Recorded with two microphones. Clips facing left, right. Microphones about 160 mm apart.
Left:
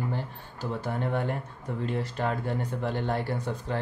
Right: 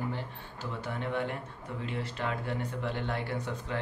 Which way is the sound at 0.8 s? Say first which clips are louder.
Left 3 dB; 45° left (ahead or behind).